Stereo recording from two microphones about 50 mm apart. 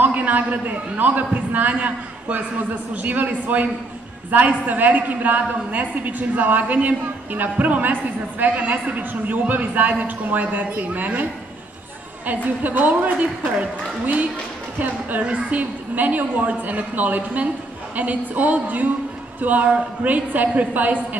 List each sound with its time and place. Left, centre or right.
0.0 s a woman's voice: right
12.6 s a woman's voice: right